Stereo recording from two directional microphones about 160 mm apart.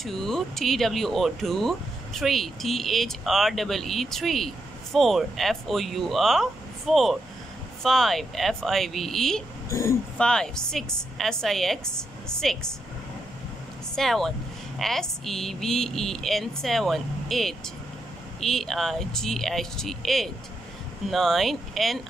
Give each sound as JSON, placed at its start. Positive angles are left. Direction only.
{"t": 0.0, "sound": "speech", "side_deg": 0}
{"t": 9.7, "sound": "speech", "side_deg": 20}
{"t": 10.1, "sound": "speech", "side_deg": 5}
{"t": 13.9, "sound": "speech", "side_deg": 0}